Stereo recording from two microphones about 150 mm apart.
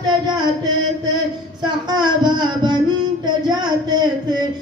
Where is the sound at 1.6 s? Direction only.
30° right (ahead or behind).